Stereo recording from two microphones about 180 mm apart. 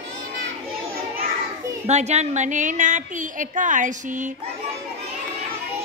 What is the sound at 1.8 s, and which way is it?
A woman's voice, 40° right (ahead or behind).